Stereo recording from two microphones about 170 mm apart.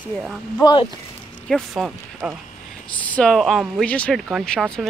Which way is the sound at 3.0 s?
5° left (ahead or behind).